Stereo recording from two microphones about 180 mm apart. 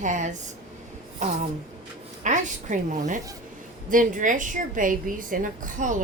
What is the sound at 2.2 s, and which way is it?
A woman's voice, 40° right (ahead or behind).